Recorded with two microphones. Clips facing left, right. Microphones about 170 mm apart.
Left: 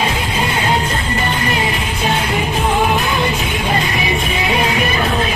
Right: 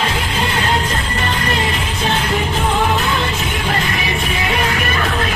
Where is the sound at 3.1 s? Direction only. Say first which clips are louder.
Left 2 dB; 15° left (ahead or behind).